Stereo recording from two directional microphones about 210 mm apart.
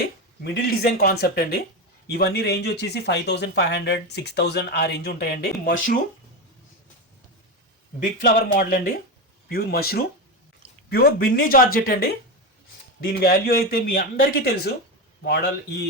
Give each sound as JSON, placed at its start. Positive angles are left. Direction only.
{"t": 0.4, "sound": "speech", "side_deg": 50}
{"t": 7.9, "sound": "speech", "side_deg": 45}